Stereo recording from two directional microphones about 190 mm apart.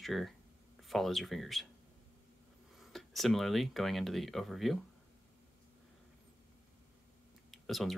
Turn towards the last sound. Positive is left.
turn(degrees=0)  # may be behind; listen again after turning